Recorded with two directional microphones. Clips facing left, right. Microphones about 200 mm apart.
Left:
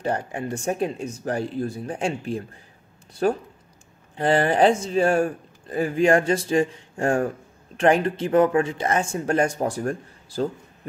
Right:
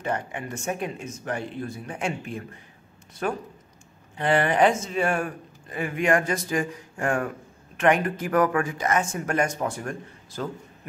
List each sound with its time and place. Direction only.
0.0 s speech: 35° left (ahead or behind)